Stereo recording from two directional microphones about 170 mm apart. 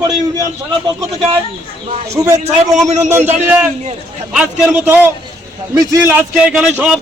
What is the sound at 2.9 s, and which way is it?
Speech, 40° right (ahead or behind).